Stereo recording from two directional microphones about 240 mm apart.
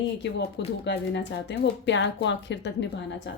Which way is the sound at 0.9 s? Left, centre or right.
Left.